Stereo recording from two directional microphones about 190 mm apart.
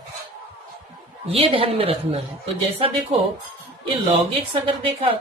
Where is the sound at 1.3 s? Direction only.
30° right (ahead or behind).